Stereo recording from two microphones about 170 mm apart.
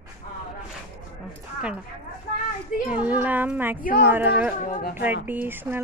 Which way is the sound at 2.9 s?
10° right (ahead or behind).